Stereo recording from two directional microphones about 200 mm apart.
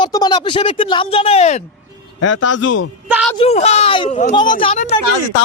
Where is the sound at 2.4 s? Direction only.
75° left (ahead or behind).